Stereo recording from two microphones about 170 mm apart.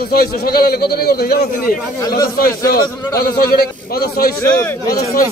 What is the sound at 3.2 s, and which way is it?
A man's voice, 60° left (ahead or behind).